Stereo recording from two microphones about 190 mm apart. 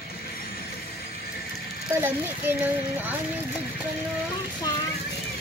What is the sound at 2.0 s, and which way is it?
Speech, 10° right (ahead or behind).